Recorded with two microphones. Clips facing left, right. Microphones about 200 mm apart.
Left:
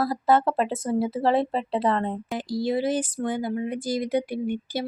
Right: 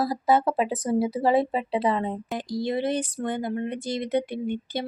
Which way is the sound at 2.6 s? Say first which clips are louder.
Left 2 dB; 5° left (ahead or behind).